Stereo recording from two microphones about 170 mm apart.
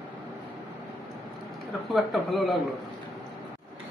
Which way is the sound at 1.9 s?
Centre (ahead or behind).